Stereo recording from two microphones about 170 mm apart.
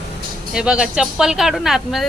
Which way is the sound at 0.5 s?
5° right (ahead or behind).